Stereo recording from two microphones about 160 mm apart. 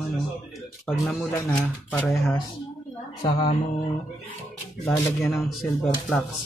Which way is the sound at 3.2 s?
35° left (ahead or behind).